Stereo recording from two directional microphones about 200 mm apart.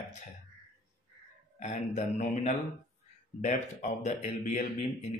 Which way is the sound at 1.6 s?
35° left (ahead or behind).